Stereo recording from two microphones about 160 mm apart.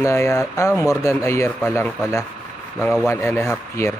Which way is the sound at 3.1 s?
15° left (ahead or behind).